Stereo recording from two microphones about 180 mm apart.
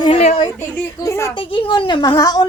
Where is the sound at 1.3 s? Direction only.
25° left (ahead or behind).